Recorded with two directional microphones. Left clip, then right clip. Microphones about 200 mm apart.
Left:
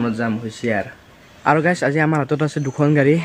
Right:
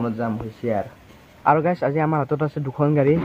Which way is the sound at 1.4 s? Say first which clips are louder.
Left 2 dB; 15° left (ahead or behind).